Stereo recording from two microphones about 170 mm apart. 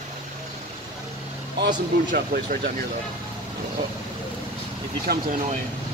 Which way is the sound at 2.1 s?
55° right (ahead or behind).